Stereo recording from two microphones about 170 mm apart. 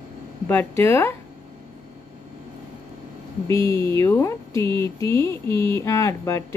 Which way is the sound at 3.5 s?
15° left (ahead or behind).